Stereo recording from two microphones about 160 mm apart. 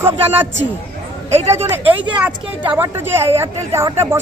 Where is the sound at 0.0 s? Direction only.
15° right (ahead or behind).